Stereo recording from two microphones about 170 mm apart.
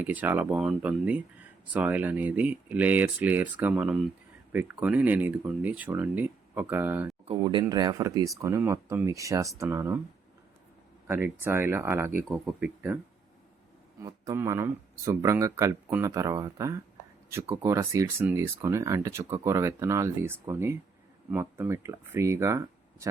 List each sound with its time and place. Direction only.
0.0 s speech: 10° right (ahead or behind)
7.3 s speech: 30° right (ahead or behind); by 10.0 s 15° right (ahead or behind)
11.4 s speech: 15° right (ahead or behind)
14.0 s speech: 20° right (ahead or behind)